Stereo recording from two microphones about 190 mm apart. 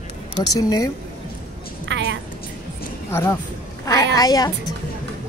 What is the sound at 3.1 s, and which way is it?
Speech, 15° left (ahead or behind).